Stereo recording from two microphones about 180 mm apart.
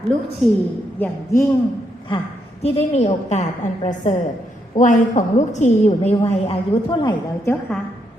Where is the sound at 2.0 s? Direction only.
30° left (ahead or behind).